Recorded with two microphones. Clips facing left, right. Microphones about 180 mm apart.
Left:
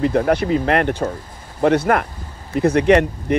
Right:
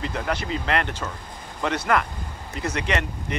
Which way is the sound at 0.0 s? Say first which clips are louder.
Left 11 dB; 55° left (ahead or behind).